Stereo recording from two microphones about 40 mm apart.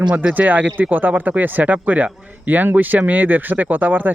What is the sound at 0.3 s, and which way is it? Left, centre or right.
Speech, right.